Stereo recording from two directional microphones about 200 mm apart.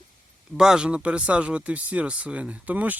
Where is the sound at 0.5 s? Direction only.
5° right (ahead or behind).